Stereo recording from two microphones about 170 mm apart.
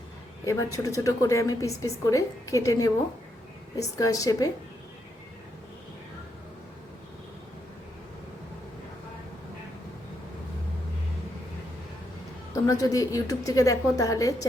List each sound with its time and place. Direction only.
0.4 s a woman's voice: 20° left (ahead or behind)
12.6 s a woman's voice: 20° left (ahead or behind)